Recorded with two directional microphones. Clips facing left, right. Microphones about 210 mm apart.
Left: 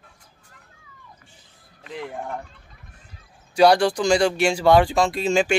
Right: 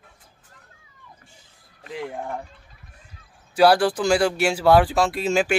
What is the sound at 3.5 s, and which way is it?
Speech, 5° right (ahead or behind).